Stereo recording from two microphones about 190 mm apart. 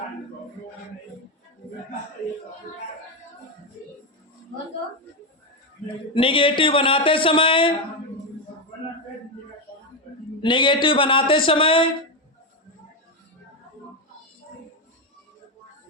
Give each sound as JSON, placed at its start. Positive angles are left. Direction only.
{"t": 6.1, "sound": "a man's voice", "side_deg": 25}
{"t": 10.4, "sound": "a man's voice", "side_deg": 25}